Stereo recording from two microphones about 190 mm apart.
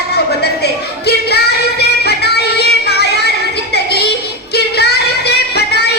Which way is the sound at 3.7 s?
60° left (ahead or behind).